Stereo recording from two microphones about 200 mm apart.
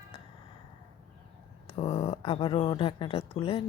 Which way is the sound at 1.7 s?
25° left (ahead or behind).